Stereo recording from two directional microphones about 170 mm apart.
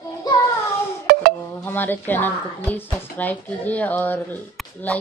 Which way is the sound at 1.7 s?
10° left (ahead or behind).